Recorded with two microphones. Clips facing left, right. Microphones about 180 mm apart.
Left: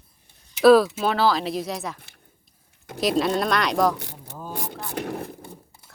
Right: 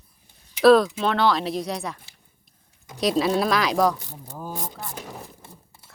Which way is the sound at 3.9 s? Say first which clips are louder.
Left 3 dB; 70° left (ahead or behind).